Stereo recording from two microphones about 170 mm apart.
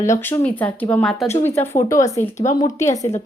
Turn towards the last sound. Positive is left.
turn(degrees=20)  # may be behind; listen again after turning